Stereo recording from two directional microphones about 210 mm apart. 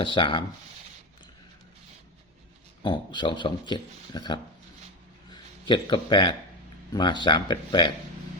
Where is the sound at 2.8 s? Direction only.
20° left (ahead or behind).